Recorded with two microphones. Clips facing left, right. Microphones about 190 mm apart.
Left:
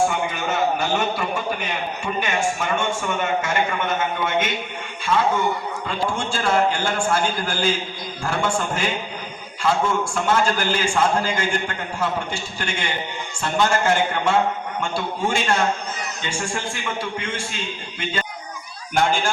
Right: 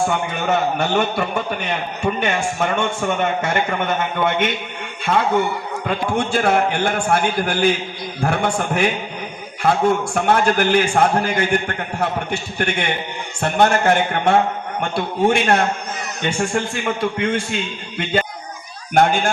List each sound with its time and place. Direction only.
0.1 s a man's voice: 60° right (ahead or behind)